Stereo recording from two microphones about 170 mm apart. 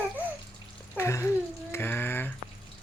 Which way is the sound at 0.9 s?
15° left (ahead or behind).